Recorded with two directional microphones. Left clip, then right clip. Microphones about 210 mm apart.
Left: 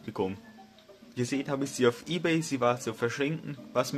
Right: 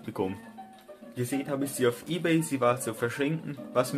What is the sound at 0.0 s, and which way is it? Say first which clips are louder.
Music: even; 20° left (ahead or behind).